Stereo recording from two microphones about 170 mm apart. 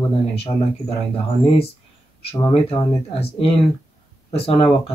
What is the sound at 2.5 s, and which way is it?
Speech, 35° left (ahead or behind).